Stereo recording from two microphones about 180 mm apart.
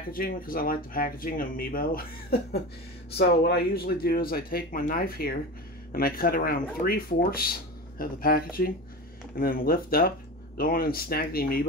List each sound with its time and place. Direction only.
0.1 s speech: 55° left (ahead or behind)